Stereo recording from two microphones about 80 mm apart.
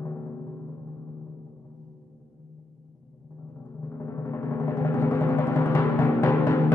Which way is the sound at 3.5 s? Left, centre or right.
Left.